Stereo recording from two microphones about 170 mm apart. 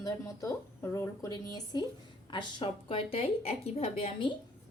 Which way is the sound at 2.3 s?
30° left (ahead or behind).